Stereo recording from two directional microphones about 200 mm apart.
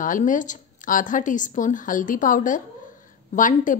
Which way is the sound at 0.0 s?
40° left (ahead or behind).